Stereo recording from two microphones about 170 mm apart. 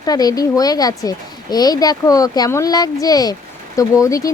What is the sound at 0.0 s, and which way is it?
Speech, 20° left (ahead or behind).